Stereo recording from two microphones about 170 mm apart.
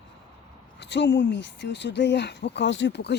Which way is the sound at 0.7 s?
90° left.